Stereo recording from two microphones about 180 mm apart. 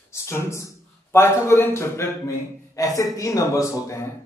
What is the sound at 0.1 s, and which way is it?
A man's voice, 15° left (ahead or behind).